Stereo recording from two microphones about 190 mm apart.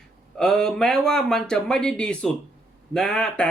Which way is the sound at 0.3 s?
5° left (ahead or behind).